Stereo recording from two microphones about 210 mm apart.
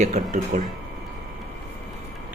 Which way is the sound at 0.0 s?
35° right (ahead or behind).